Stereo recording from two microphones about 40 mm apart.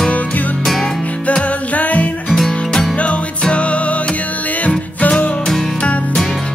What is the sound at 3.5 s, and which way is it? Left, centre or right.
Music, left.